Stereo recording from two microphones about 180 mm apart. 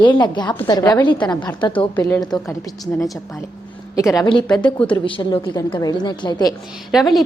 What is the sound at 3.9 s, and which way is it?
A woman's voice, 20° left (ahead or behind).